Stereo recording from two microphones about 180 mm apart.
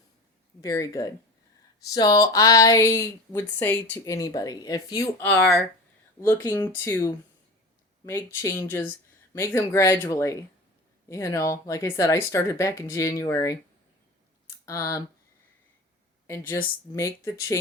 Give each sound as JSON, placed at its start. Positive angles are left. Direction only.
{"t": 0.6, "sound": "speech", "side_deg": 15}
{"t": 14.7, "sound": "speech", "side_deg": 15}
{"t": 16.9, "sound": "speech", "side_deg": 15}